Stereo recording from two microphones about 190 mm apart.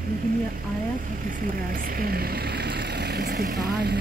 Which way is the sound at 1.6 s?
50° right (ahead or behind).